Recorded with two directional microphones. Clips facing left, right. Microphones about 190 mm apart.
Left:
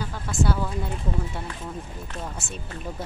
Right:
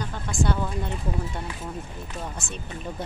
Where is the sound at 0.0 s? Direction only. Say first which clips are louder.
Left 1 dB; 5° left (ahead or behind).